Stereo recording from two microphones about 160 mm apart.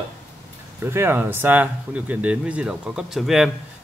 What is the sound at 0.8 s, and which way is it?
Speech, 15° right (ahead or behind).